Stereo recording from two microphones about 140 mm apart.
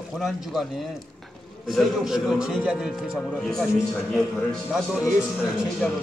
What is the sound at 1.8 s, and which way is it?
A man's voice, 5° right (ahead or behind).